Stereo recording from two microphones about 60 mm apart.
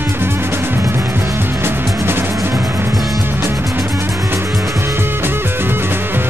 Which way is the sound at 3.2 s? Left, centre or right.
Right.